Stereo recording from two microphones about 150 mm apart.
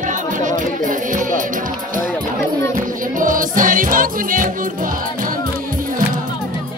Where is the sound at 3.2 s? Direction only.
60° right (ahead or behind).